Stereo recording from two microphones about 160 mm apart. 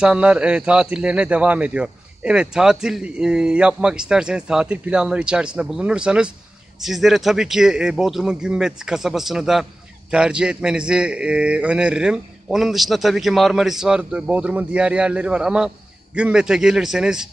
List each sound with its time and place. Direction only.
0.0 s speech: 5° right (ahead or behind)